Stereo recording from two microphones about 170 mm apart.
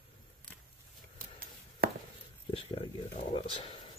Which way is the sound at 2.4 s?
30° left (ahead or behind).